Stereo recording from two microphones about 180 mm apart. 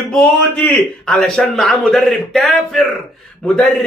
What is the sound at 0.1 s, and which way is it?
A man's voice, 5° left (ahead or behind).